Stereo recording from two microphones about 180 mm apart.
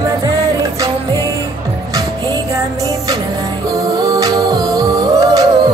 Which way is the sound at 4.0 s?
20° right (ahead or behind).